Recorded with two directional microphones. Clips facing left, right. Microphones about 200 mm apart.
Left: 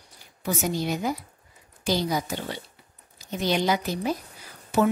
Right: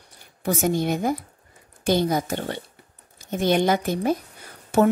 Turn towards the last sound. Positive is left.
turn(degrees=-50)  # may be behind; listen again after turning